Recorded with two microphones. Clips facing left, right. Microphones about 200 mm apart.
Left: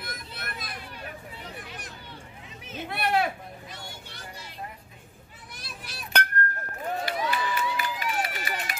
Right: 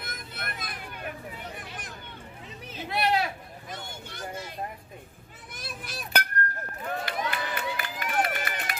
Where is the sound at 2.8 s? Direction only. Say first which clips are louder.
Even; 55° left (ahead or behind).